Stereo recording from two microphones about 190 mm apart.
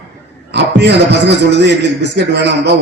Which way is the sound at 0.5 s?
65° right (ahead or behind).